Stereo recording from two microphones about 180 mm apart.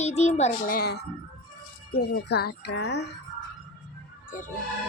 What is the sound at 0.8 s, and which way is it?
A child's voice, 60° left (ahead or behind).